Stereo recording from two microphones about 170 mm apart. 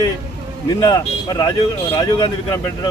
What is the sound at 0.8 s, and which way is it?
Speech, 25° left (ahead or behind).